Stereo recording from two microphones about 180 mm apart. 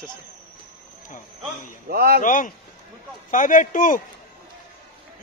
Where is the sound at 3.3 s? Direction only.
45° left (ahead or behind).